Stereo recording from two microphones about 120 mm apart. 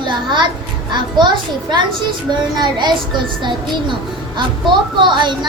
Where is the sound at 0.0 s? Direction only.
40° right (ahead or behind).